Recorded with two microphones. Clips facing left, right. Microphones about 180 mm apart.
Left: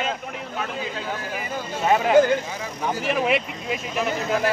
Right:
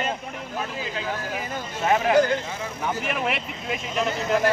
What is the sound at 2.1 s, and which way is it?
Speech, 20° left (ahead or behind).